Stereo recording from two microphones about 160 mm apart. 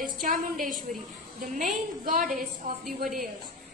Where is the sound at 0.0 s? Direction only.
60° right (ahead or behind).